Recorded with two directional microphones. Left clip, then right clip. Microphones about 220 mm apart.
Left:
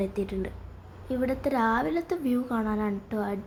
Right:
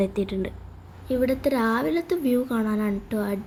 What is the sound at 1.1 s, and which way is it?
Speech, centre (ahead or behind).